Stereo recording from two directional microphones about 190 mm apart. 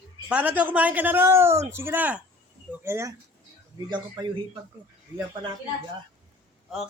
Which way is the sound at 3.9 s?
25° right (ahead or behind).